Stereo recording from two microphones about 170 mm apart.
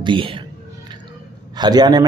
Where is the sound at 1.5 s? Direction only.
25° right (ahead or behind).